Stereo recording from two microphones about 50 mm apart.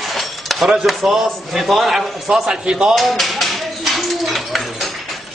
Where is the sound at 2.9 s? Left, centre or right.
Centre.